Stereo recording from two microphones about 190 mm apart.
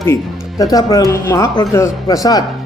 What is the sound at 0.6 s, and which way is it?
Speech, 20° left (ahead or behind).